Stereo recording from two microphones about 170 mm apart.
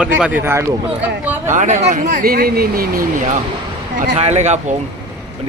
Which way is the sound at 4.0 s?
40° right (ahead or behind).